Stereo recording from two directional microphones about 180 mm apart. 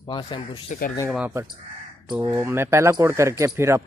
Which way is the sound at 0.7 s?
50° left (ahead or behind).